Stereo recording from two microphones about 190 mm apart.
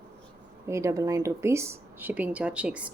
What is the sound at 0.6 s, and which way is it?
Speech, 15° right (ahead or behind).